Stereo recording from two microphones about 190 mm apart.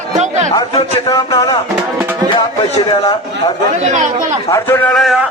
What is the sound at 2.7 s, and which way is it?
Speech, 25° left (ahead or behind).